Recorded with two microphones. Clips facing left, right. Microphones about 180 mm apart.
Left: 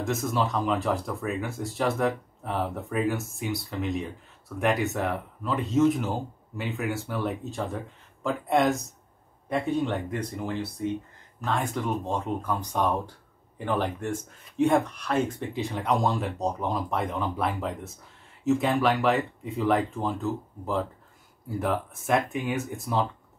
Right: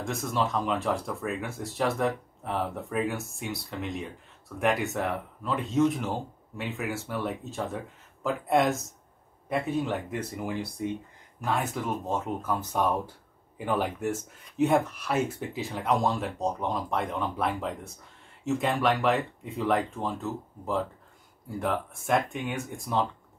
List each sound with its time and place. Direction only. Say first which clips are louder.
0.0 s speech: left 2 dB; centre (ahead or behind)